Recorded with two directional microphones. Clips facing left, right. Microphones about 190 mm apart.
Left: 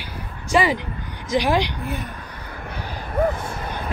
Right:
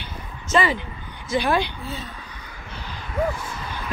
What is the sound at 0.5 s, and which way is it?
Speech, 15° left (ahead or behind).